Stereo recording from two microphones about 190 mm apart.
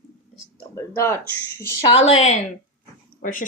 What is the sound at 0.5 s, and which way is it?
Speech, 15° left (ahead or behind).